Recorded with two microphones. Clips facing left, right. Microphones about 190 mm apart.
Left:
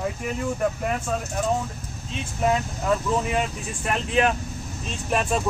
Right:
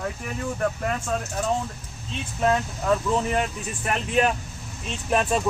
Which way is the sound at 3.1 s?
5° left (ahead or behind).